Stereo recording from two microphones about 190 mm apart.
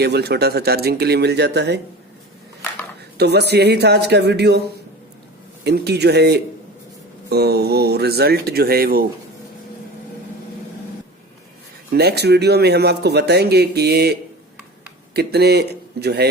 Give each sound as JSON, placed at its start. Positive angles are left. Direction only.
{"t": 0.0, "sound": "a man's voice", "side_deg": -60}
{"t": 3.2, "sound": "a man's voice", "side_deg": -60}
{"t": 5.6, "sound": "a man's voice", "side_deg": -60}
{"t": 11.9, "sound": "a man's voice", "side_deg": -60}